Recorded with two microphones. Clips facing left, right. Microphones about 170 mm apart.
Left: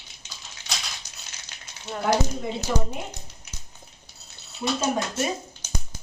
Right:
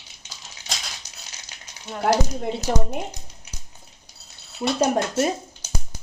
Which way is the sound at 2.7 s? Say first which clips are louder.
Right 3 dB; 60° right (ahead or behind).